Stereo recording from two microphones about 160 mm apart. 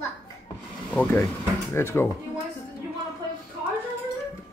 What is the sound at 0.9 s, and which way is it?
Speech, 15° left (ahead or behind).